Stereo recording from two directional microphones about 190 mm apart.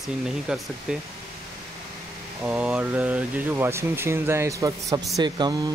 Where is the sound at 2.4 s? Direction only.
5° right (ahead or behind).